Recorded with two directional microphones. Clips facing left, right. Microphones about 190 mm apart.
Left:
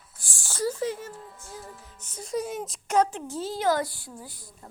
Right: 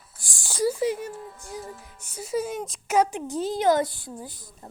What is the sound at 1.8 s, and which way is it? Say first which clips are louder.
A woman's voice: right 3 dB; 10° right (ahead or behind).